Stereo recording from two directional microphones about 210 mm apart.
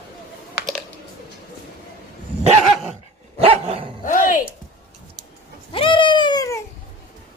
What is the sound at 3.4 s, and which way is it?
Dog, 30° right (ahead or behind).